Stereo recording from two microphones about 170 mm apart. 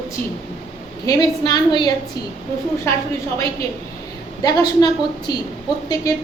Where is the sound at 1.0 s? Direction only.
20° left (ahead or behind).